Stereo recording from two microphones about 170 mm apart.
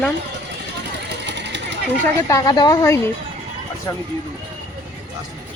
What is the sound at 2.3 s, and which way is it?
A woman's voice, 25° left (ahead or behind).